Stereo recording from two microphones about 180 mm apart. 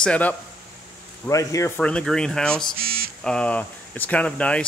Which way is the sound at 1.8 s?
5° left (ahead or behind).